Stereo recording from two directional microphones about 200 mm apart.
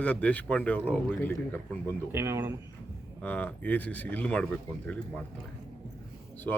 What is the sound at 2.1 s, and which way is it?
Speech, 10° right (ahead or behind).